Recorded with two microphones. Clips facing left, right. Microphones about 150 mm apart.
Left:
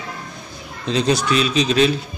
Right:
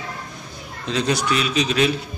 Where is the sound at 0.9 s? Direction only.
25° left (ahead or behind).